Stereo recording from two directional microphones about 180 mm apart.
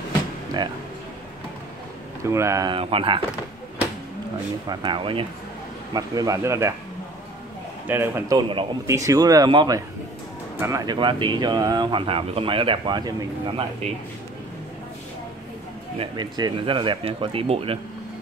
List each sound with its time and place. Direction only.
2.2 s speech: 15° right (ahead or behind); by 3.2 s 30° right (ahead or behind)
4.6 s speech: 25° right (ahead or behind)
7.9 s a man's voice: 15° right (ahead or behind)
8.4 s a man's voice: 25° right (ahead or behind)
11.0 s speech: 25° right (ahead or behind)
13.8 s a man's voice: 35° right (ahead or behind)
16.0 s speech: 25° right (ahead or behind)